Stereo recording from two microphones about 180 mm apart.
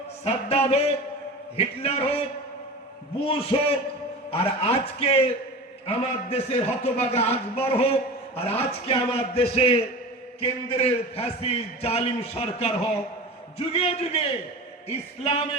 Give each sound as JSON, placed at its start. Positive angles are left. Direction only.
{"t": 0.3, "sound": "a man's voice", "side_deg": 35}
{"t": 3.2, "sound": "a man's voice", "side_deg": 30}